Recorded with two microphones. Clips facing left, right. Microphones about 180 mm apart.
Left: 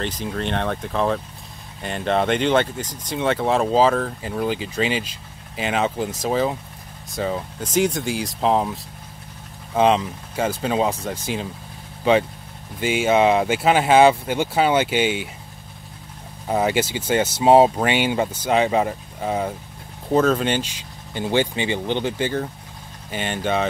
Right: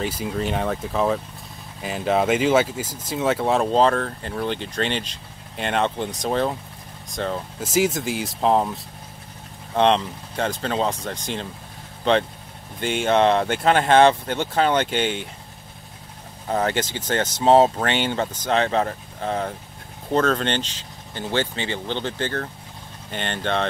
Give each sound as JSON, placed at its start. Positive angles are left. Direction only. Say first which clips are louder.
{"t": 0.0, "sound": "speech", "louder": "right 1 dB", "side_deg": -5}
{"t": 9.8, "sound": "speech", "louder": "left 1 dB", "side_deg": 5}
{"t": 16.4, "sound": "speech", "louder": "left 2 dB", "side_deg": 10}